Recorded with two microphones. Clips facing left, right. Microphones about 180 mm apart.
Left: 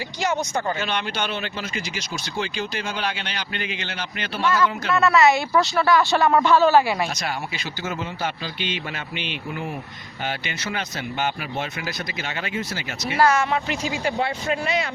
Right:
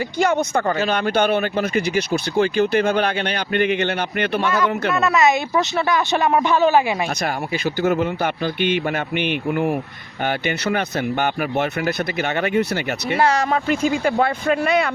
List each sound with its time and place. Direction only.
0.2 s speech: 55° right (ahead or behind)
0.8 s speech: 45° right (ahead or behind)
4.9 s speech: 20° right (ahead or behind)
7.2 s speech: 55° right (ahead or behind)
13.1 s speech: 30° right (ahead or behind)
13.5 s speech: 50° right (ahead or behind)